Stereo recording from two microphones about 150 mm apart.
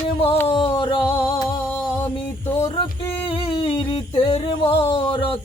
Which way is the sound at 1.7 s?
15° left (ahead or behind).